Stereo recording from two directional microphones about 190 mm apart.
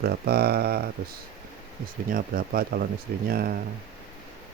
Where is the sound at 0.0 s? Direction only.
55° right (ahead or behind).